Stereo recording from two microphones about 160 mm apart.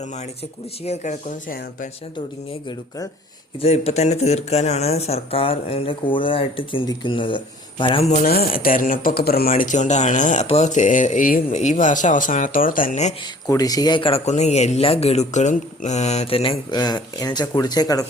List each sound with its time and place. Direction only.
0.9 s speech: 45° left (ahead or behind)
2.1 s speech: 30° left (ahead or behind)
3.6 s speech: 40° left (ahead or behind)
8.0 s speech: 45° left (ahead or behind)
8.3 s speech: 70° left (ahead or behind)
11.5 s speech: 50° left (ahead or behind)
13.5 s speech: 25° left (ahead or behind)